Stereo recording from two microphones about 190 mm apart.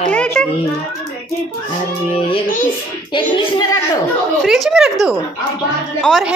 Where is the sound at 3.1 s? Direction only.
25° left (ahead or behind).